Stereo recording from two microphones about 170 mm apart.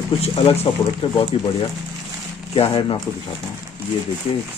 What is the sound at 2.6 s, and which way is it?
Speech, 35° left (ahead or behind).